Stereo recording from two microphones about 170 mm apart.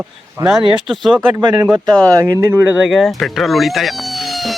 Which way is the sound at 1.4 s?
20° right (ahead or behind).